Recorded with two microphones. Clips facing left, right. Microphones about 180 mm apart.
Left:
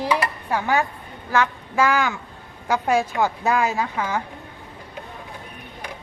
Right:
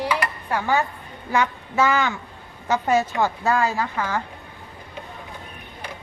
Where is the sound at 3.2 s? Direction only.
15° left (ahead or behind).